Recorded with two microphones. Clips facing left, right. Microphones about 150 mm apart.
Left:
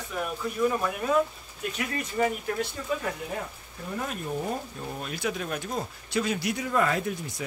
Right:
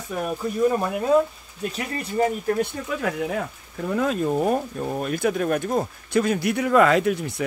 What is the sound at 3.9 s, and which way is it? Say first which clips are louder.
Speech: right 10 dB; 90° right.